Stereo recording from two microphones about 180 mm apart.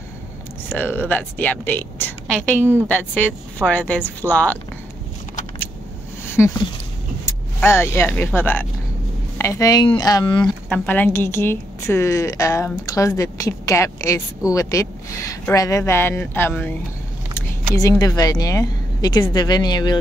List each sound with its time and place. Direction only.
0.7 s a woman's voice: 10° left (ahead or behind)
7.2 s speech: 15° left (ahead or behind)
10.7 s a woman's voice: 10° left (ahead or behind)